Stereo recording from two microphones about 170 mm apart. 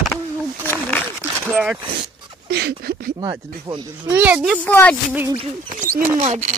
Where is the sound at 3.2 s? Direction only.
30° right (ahead or behind).